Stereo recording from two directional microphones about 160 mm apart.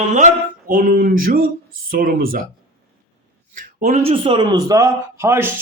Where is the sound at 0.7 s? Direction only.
60° right (ahead or behind).